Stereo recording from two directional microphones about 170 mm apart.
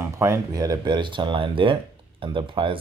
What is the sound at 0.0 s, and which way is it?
Speech, 15° right (ahead or behind).